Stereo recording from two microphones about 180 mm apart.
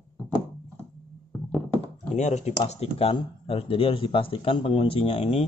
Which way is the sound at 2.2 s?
40° left (ahead or behind).